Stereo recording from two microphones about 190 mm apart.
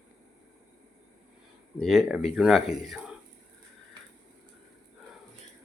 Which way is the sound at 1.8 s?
Centre (ahead or behind).